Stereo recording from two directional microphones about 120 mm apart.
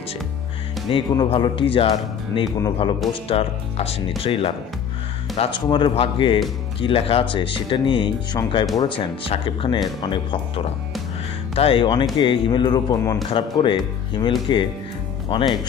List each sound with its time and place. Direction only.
0.8 s speech: 45° left (ahead or behind); by 13.2 s 30° left (ahead or behind)
13.3 s speech: 45° left (ahead or behind)